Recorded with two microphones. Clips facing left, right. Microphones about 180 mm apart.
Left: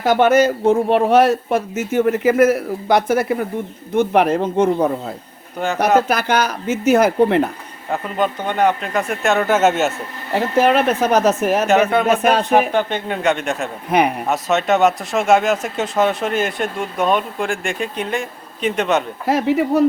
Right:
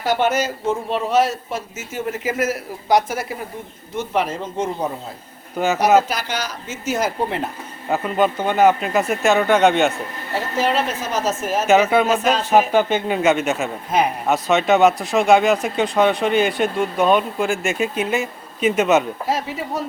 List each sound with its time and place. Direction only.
0.0 s speech: 50° left (ahead or behind)
5.6 s speech: centre (ahead or behind)
6.1 s speech: 55° left (ahead or behind)
7.9 s speech: 5° right (ahead or behind)
10.3 s speech: 55° left (ahead or behind)
12.5 s speech: 5° right (ahead or behind)
13.9 s speech: 60° left (ahead or behind)
14.3 s speech: centre (ahead or behind)
19.3 s speech: 60° left (ahead or behind)